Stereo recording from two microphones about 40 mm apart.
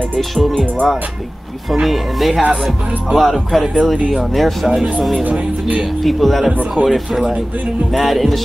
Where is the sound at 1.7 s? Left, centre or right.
Centre.